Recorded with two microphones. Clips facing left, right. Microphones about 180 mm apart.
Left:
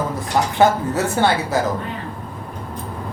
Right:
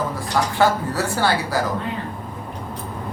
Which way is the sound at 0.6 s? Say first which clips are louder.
Left 4 dB; 20° left (ahead or behind).